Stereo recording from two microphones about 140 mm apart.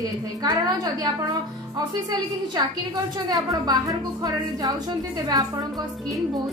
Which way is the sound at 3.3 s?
25° right (ahead or behind).